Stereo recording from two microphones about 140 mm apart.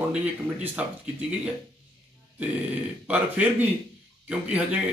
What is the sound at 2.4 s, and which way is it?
Speech, 10° right (ahead or behind).